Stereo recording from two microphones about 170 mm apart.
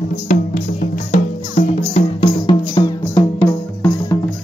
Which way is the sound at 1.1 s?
45° left (ahead or behind).